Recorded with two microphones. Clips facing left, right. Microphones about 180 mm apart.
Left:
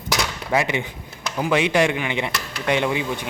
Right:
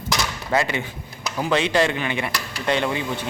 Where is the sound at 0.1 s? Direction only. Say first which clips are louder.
Left 1 dB; 15° left (ahead or behind).